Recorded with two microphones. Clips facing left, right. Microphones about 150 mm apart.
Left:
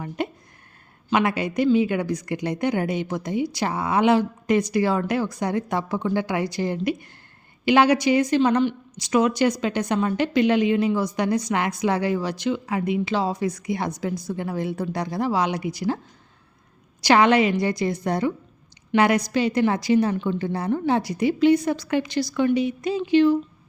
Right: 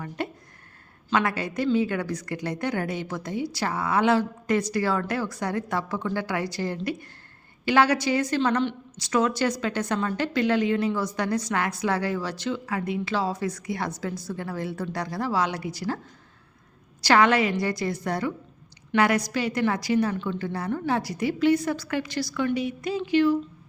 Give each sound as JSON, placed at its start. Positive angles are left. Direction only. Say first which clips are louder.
{"t": 0.2, "sound": "a woman's voice", "louder": "left 4 dB", "side_deg": 20}
{"t": 17.0, "sound": "a woman's voice", "louder": "left 3 dB", "side_deg": 20}